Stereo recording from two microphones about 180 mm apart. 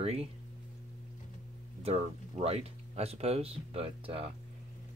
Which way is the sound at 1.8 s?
35° right (ahead or behind).